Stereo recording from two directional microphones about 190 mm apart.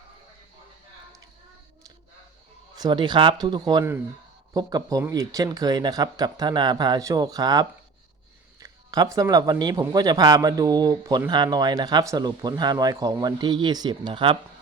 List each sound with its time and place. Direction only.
2.7 s speech: 20° right (ahead or behind)